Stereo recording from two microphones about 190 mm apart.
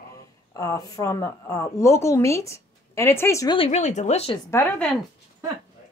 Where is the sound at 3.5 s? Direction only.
30° left (ahead or behind).